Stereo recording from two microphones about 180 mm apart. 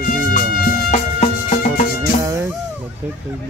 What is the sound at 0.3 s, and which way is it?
Music, 50° left (ahead or behind).